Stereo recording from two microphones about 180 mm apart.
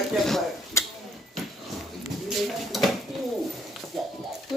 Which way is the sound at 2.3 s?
Centre (ahead or behind).